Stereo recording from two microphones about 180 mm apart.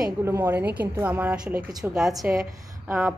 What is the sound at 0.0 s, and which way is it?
A woman's voice, 15° right (ahead or behind).